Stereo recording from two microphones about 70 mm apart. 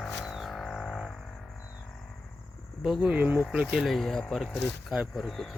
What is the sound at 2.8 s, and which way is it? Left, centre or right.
Speech, centre.